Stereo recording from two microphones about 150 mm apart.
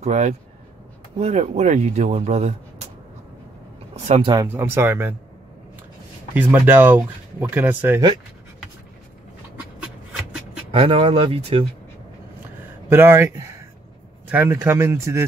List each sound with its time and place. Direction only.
0.0 s speech: 45° right (ahead or behind)
4.2 s speech: 30° right (ahead or behind)
4.5 s speech: 15° right (ahead or behind)
6.3 s speech: 15° right (ahead or behind)
10.7 s speech: 40° right (ahead or behind)
12.9 s speech: 15° right (ahead or behind)